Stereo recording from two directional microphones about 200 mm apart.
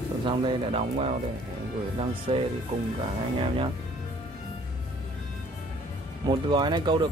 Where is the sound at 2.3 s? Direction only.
25° right (ahead or behind).